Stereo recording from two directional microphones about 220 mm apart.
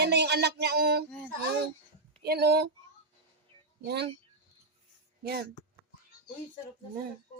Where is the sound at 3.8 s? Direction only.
50° right (ahead or behind).